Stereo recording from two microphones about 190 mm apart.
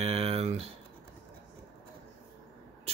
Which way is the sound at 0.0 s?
30° right (ahead or behind).